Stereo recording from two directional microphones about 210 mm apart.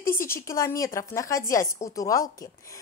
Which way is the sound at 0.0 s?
10° left (ahead or behind).